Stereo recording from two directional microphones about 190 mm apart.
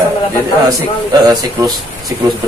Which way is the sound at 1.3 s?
20° right (ahead or behind).